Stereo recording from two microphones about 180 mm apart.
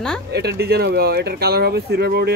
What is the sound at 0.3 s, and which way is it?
Speech, 65° right (ahead or behind).